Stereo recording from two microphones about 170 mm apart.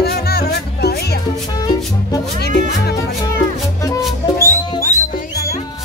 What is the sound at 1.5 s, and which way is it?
Music, 20° left (ahead or behind).